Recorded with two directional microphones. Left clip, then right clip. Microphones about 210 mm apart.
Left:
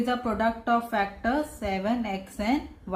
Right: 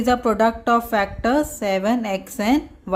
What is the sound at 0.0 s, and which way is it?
A woman's voice, 55° right (ahead or behind).